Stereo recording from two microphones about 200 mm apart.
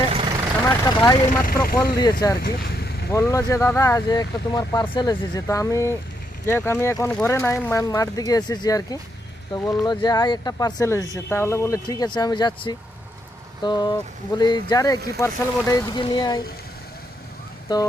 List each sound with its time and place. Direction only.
0.1 s vehicle: 25° right (ahead or behind)
0.6 s vehicle: 10° left (ahead or behind)
1.0 s speech: 20° left (ahead or behind)
1.6 s speech: 45° left (ahead or behind)
2.4 s vehicle: 50° left (ahead or behind)
3.1 s speech: 15° left (ahead or behind)
17.7 s speech: 20° left (ahead or behind)